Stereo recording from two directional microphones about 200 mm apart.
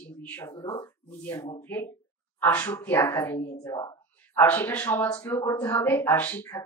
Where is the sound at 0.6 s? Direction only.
25° left (ahead or behind).